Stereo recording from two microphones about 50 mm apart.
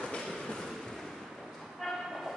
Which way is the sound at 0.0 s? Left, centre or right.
Centre.